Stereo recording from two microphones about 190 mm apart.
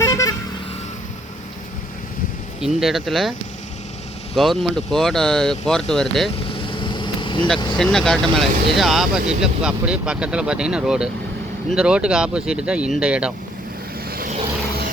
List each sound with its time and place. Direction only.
0.0 s vehicle: 15° left (ahead or behind)
2.6 s speech: centre (ahead or behind)
4.4 s speech: centre (ahead or behind)
6.3 s vehicle: 30° left (ahead or behind)
7.8 s speech: 5° left (ahead or behind)
14.1 s vehicle: 50° right (ahead or behind)